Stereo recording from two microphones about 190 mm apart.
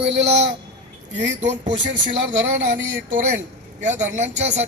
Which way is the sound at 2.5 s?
80° right.